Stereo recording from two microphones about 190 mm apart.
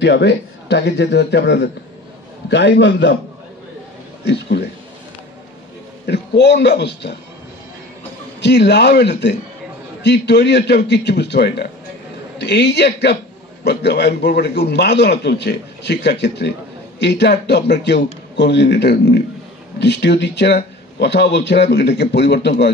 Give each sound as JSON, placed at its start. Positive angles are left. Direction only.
{"t": 0.0, "sound": "a man's voice", "side_deg": 65}
{"t": 4.2, "sound": "a man's voice", "side_deg": 60}
{"t": 6.0, "sound": "a man's voice", "side_deg": 65}
{"t": 8.4, "sound": "a man's voice", "side_deg": 65}